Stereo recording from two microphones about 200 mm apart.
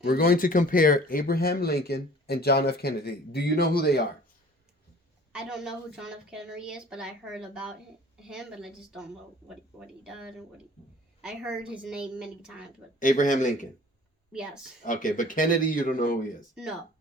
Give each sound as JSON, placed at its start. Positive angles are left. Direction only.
{"t": 0.0, "sound": "speech", "side_deg": 50}
{"t": 5.3, "sound": "a woman's voice", "side_deg": -5}
{"t": 13.0, "sound": "speech", "side_deg": 40}
{"t": 14.3, "sound": "a woman's voice", "side_deg": -5}
{"t": 14.8, "sound": "speech", "side_deg": 40}